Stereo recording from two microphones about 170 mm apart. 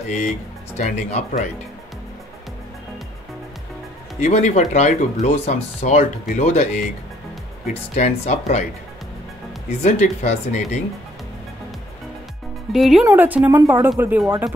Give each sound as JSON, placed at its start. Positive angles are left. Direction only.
{"t": 0.7, "sound": "speech", "side_deg": 40}
{"t": 4.2, "sound": "speech", "side_deg": 45}
{"t": 9.8, "sound": "speech", "side_deg": 45}
{"t": 12.7, "sound": "speech", "side_deg": 0}
{"t": 13.0, "sound": "speech", "side_deg": -10}